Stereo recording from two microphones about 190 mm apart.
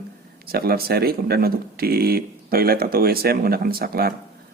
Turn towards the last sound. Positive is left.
turn(degrees=-55)  # may be behind; listen again after turning